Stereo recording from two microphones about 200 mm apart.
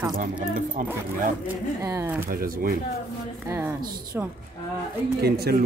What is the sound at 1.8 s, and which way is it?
Speech, 15° right (ahead or behind).